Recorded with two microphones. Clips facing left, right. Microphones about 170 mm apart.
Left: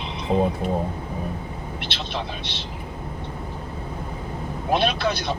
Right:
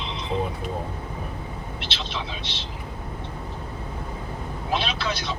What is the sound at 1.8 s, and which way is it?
Speech, 55° left (ahead or behind).